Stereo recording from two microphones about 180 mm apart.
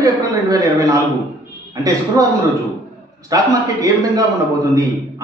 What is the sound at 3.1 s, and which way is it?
A man's voice, 20° right (ahead or behind).